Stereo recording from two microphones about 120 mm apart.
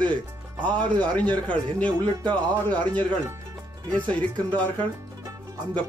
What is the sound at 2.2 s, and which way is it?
Speech, 40° right (ahead or behind).